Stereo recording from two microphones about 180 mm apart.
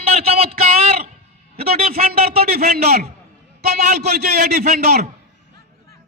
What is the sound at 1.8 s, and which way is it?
Speech, 35° right (ahead or behind).